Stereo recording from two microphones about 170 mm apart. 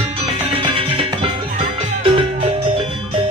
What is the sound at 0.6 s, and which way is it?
Music, 30° right (ahead or behind).